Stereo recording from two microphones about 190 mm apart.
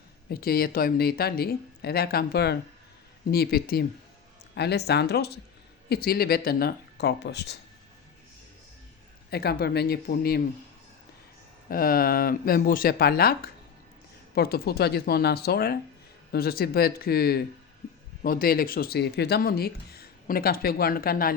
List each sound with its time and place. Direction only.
0.3 s speech: 55° left (ahead or behind)
9.3 s speech: 55° left (ahead or behind)
11.7 s speech: 50° left (ahead or behind)